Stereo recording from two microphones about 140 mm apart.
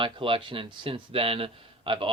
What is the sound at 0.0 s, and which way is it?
Speech, 40° right (ahead or behind).